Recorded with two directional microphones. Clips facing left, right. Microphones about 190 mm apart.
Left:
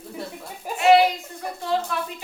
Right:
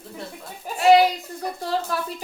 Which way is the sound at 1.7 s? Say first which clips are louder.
Left 2 dB; 35° right (ahead or behind).